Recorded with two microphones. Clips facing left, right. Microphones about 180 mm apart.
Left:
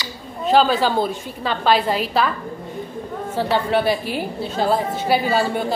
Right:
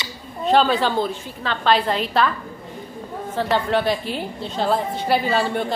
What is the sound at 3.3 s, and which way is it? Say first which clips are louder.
A woman's voice: left 1 dB; 5° left (ahead or behind).